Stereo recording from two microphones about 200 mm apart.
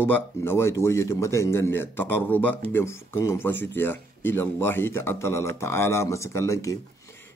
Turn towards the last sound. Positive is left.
turn(degrees=15)  # may be behind; listen again after turning